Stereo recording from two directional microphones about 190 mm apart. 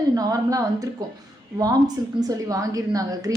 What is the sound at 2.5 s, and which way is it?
Speech, 20° right (ahead or behind).